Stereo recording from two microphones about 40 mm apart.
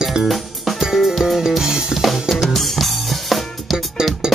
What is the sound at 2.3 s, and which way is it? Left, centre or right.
Music, centre.